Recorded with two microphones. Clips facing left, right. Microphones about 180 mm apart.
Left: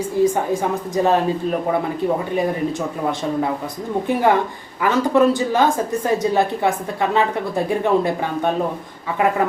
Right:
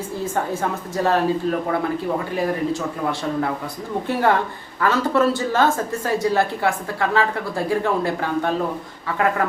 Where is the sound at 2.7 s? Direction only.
20° left (ahead or behind).